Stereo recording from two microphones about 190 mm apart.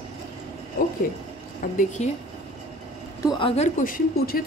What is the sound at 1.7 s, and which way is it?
Speech, 40° left (ahead or behind).